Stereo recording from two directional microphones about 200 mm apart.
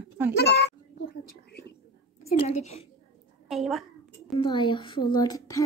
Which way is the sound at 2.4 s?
30° left (ahead or behind).